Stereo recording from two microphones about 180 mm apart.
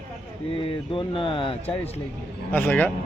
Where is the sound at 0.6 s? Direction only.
30° left (ahead or behind).